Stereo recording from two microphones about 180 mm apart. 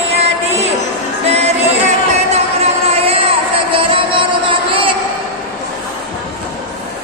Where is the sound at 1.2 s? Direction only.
35° right (ahead or behind).